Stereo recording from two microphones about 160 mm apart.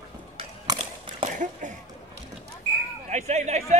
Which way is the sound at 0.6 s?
30° right (ahead or behind).